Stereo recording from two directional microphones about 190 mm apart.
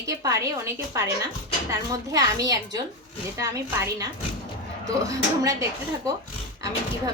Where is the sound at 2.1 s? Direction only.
20° right (ahead or behind).